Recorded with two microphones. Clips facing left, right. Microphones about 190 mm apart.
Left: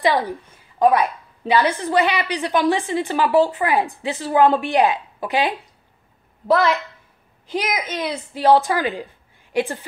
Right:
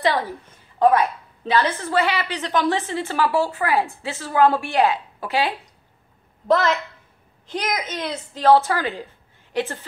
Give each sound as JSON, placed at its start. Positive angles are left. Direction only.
{"t": 0.7, "sound": "a woman's voice", "side_deg": 15}